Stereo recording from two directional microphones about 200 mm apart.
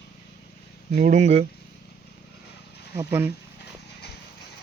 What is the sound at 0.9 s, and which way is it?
Speech, 40° right (ahead or behind).